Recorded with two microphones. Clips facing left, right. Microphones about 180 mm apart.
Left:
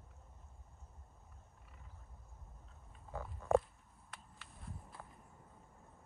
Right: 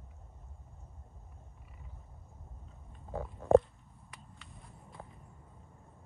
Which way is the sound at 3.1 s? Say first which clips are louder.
Right 8 dB; 30° right (ahead or behind).